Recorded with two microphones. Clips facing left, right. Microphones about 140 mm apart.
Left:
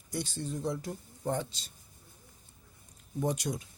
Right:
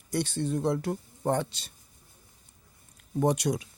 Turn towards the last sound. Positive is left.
turn(degrees=-75)  # may be behind; listen again after turning